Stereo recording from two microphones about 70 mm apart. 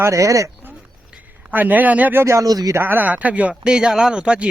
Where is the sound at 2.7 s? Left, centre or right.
Right; by 4.4 s centre.